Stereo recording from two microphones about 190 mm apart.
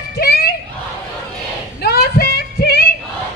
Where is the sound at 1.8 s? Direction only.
55° left (ahead or behind).